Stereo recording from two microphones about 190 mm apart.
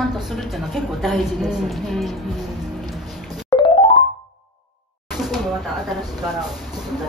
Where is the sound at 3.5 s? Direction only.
20° left (ahead or behind).